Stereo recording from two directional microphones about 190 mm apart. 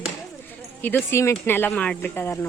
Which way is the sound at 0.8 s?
10° left (ahead or behind).